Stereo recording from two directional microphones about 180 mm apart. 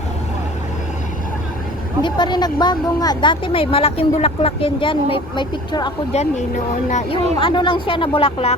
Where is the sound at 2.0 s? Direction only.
25° left (ahead or behind).